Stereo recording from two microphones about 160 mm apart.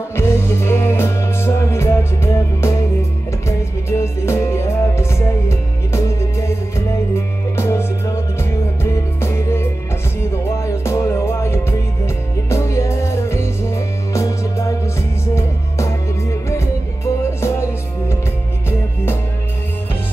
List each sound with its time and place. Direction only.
0.1 s music: 15° left (ahead or behind)